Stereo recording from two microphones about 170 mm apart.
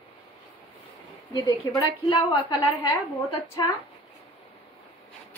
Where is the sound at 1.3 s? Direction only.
20° left (ahead or behind).